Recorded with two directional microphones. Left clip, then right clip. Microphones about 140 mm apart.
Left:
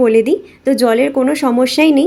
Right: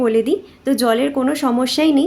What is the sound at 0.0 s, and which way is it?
Speech, 25° left (ahead or behind).